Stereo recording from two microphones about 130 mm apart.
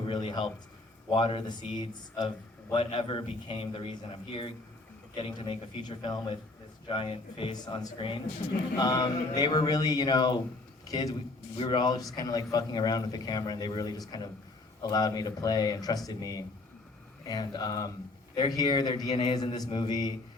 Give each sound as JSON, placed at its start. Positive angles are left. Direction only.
{"t": 0.0, "sound": "a sound", "side_deg": 35}
{"t": 1.1, "sound": "a man's voice", "side_deg": 35}
{"t": 8.7, "sound": "a man's voice", "side_deg": 30}